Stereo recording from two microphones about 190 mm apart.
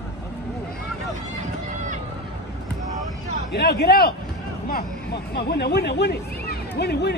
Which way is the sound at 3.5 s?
60° left (ahead or behind).